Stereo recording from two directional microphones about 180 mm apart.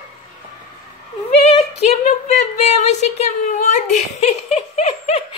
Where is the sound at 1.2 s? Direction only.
35° left (ahead or behind).